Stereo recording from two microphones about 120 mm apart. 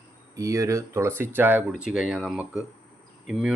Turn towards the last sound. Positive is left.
turn(degrees=-5)  # may be behind; listen again after turning